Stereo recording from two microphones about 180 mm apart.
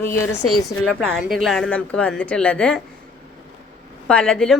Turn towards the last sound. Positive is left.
turn(degrees=5)  # may be behind; listen again after turning